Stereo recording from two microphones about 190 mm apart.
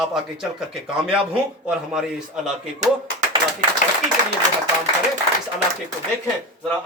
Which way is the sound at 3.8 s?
45° left (ahead or behind).